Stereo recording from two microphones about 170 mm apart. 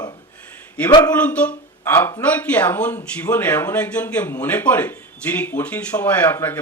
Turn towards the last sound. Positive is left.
turn(degrees=10)  # may be behind; listen again after turning